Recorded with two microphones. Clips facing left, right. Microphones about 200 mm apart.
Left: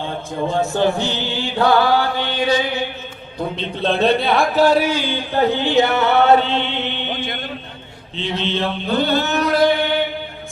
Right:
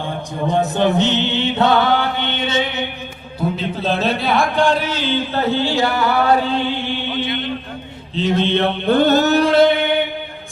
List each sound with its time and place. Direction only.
0.4 s chant: 20° right (ahead or behind)
3.5 s a man's voice: 5° right (ahead or behind); by 7.1 s 20° left (ahead or behind)
7.1 s mantra: 45° left (ahead or behind)
8.1 s chant: 45° right (ahead or behind); by 9.9 s 20° right (ahead or behind)